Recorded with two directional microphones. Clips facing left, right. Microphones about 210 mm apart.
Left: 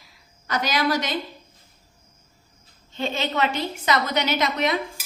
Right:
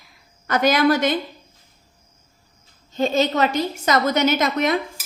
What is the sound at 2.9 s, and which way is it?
A woman's voice, 40° right (ahead or behind).